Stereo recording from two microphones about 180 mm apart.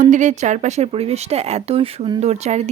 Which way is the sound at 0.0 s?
45° right (ahead or behind).